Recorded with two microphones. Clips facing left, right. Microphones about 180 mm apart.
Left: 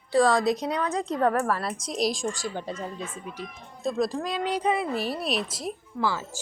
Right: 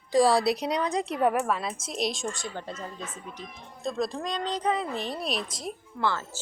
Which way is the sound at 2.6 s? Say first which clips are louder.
Left 4 dB; 10° left (ahead or behind).